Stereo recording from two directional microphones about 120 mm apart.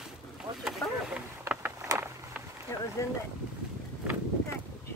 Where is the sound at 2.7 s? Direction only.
25° left (ahead or behind).